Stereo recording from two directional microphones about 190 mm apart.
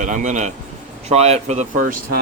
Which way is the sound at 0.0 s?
40° right (ahead or behind).